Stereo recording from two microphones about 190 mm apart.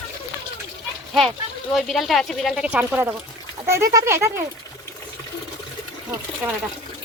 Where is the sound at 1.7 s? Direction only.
Centre (ahead or behind).